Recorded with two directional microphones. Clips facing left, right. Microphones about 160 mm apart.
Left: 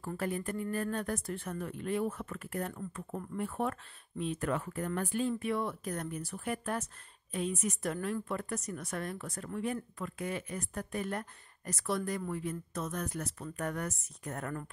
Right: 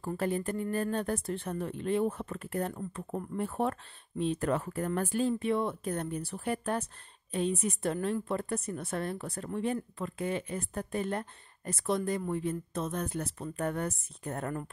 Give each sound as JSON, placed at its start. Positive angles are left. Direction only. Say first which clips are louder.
{"t": 0.0, "sound": "speech", "louder": "right 4 dB", "side_deg": -30}
{"t": 5.4, "sound": "speech", "louder": "right 4 dB", "side_deg": -25}